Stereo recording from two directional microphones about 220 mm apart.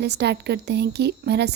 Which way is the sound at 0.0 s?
50° right (ahead or behind).